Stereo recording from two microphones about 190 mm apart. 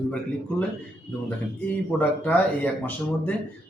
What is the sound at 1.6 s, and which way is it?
A man's voice, 10° left (ahead or behind).